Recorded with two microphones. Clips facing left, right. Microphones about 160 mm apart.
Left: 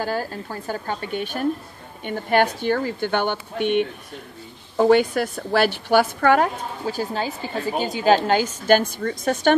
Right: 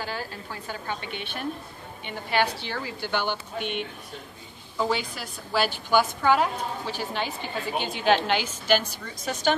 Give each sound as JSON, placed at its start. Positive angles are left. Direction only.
{"t": 0.0, "sound": "a woman's voice", "side_deg": 45}
{"t": 6.9, "sound": "a woman's voice", "side_deg": 40}